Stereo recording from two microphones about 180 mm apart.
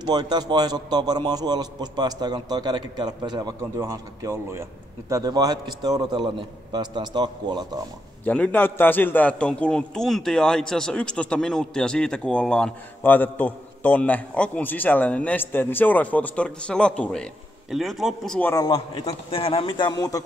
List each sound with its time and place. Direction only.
0.0 s a man's voice: 25° right (ahead or behind)
8.3 s a man's voice: 10° left (ahead or behind)
18.5 s a man's voice: 25° left (ahead or behind)